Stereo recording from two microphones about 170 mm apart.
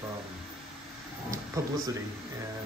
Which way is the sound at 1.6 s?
20° right (ahead or behind).